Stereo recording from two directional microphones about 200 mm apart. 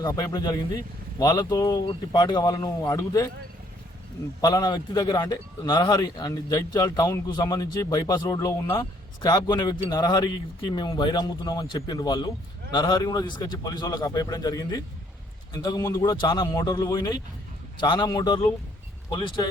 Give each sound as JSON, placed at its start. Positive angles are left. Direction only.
{"t": 0.1, "sound": "a man's voice", "side_deg": 20}
{"t": 4.4, "sound": "a man's voice", "side_deg": 20}